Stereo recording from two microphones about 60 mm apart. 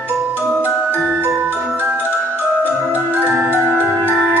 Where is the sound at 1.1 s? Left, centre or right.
Right.